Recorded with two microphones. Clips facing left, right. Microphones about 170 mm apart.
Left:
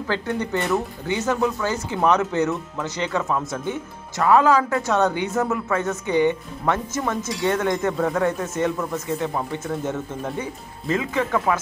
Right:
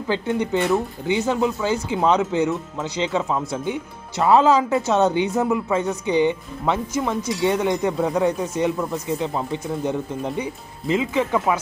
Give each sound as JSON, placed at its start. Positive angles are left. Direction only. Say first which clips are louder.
{"t": 0.1, "sound": "speech", "louder": "right 3 dB", "side_deg": -15}